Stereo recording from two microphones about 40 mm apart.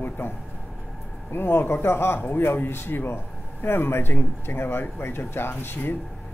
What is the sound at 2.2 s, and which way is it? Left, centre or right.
Speech, left.